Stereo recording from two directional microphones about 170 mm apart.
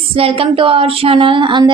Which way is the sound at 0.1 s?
35° right (ahead or behind).